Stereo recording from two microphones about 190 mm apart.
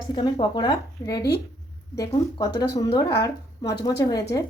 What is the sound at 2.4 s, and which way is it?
A woman's voice, 20° left (ahead or behind).